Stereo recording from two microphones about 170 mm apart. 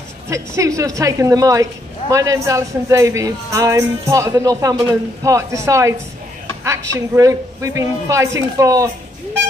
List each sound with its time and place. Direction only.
0.3 s speech: 20° right (ahead or behind)
7.2 s speech: 20° right (ahead or behind)